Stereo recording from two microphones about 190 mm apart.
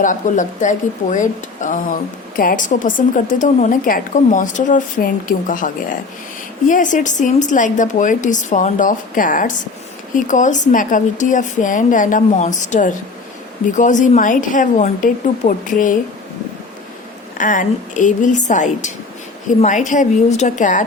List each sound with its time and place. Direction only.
0.0 s a woman's voice: 40° left (ahead or behind)
17.3 s a woman's voice: 45° left (ahead or behind)